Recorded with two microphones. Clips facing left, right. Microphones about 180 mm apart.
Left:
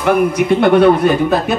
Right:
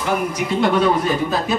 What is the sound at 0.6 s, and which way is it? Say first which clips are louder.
A man's voice: left 6 dB; 60° left (ahead or behind).